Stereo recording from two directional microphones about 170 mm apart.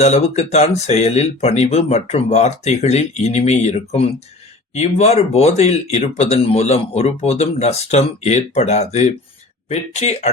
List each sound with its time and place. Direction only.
0.0 s speech: 40° left (ahead or behind)